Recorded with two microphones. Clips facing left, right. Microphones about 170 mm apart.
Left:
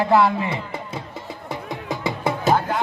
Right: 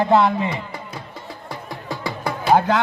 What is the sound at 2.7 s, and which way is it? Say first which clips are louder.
Music: right 4 dB; 90° right.